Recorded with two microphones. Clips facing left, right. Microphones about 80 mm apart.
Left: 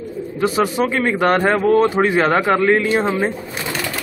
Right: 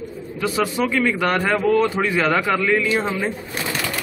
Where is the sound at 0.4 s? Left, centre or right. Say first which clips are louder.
Left 4 dB; left.